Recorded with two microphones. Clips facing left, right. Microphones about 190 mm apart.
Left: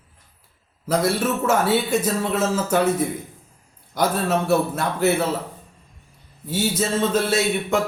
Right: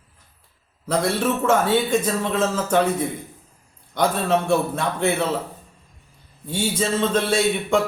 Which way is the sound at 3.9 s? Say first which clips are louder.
Right 1 dB; 5° left (ahead or behind).